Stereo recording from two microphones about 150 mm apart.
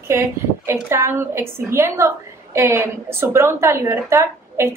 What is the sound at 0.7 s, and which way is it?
A woman's voice, 15° right (ahead or behind).